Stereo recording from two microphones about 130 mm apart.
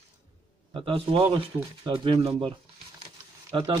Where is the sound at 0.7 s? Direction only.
45° right (ahead or behind).